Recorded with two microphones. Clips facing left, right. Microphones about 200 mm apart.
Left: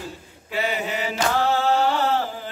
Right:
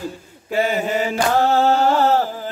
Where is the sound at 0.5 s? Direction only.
45° right (ahead or behind).